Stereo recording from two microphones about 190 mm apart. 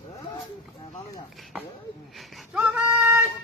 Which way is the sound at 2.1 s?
Centre (ahead or behind).